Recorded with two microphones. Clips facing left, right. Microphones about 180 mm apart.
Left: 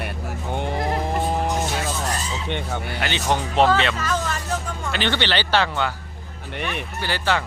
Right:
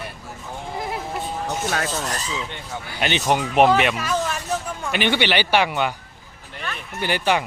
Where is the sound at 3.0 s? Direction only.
20° right (ahead or behind).